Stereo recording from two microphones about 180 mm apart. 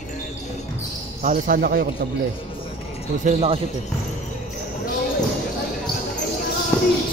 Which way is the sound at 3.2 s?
35° right (ahead or behind).